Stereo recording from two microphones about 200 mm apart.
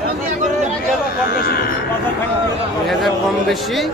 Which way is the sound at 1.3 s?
50° left (ahead or behind).